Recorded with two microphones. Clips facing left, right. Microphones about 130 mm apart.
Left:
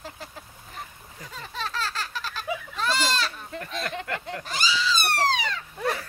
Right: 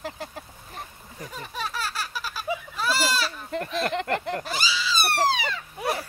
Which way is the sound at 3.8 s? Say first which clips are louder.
Right 6 dB; 55° right (ahead or behind).